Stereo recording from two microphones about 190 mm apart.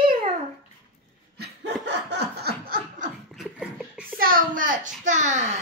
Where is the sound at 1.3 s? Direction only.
60° right (ahead or behind).